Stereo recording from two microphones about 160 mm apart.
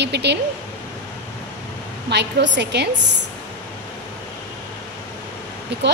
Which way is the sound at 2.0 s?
90° right.